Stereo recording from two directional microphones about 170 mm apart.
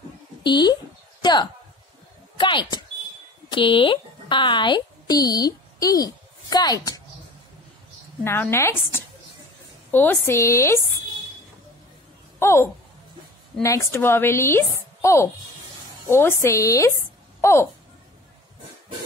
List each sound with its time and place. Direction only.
0.4 s speech: 25° left (ahead or behind)
8.2 s a woman's voice: 15° left (ahead or behind)
12.4 s a woman's voice: 15° left (ahead or behind)
15.0 s a sound: 15° left (ahead or behind)
16.1 s a woman's voice: 15° left (ahead or behind)